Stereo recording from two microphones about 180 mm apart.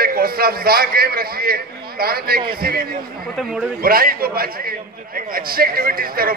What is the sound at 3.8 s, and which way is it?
A man's voice, 55° right (ahead or behind).